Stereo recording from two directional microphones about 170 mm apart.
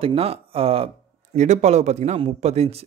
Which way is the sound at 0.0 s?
35° right (ahead or behind).